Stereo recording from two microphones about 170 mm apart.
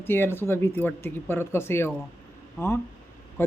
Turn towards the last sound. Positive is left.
turn(degrees=10)  # may be behind; listen again after turning